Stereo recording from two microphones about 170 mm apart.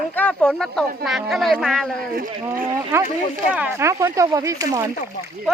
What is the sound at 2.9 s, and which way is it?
Speech, 15° right (ahead or behind).